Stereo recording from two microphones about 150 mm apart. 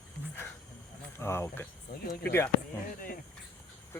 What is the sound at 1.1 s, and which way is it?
Speech, 15° left (ahead or behind).